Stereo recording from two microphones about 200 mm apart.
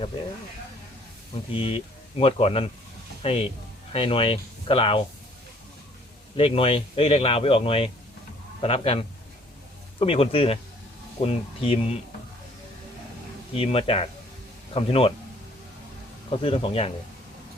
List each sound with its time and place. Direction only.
1.5 s speech: 25° left (ahead or behind)
6.3 s speech: 30° left (ahead or behind)
13.5 s speech: 30° left (ahead or behind)
16.3 s speech: 30° left (ahead or behind)